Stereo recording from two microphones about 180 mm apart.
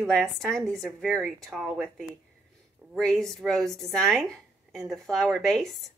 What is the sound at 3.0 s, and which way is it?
A woman's voice, centre (ahead or behind).